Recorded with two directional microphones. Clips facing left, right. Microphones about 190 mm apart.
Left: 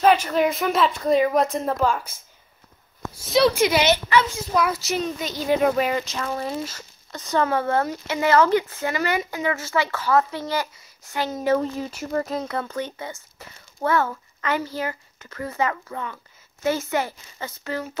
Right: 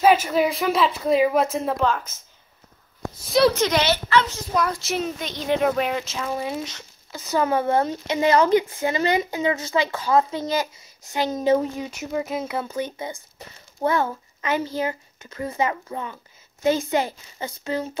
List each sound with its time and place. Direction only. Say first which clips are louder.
0.0 s speech: even; 5° right (ahead or behind)
3.3 s speech: right 1 dB; centre (ahead or behind)
3.5 s speech: left 2 dB; 10° left (ahead or behind)
4.2 s speech: left 1 dB; 5° left (ahead or behind)
7.4 s speech: right 4 dB; 15° right (ahead or behind)
11.6 s a child's voice: left 1 dB; 5° right (ahead or behind)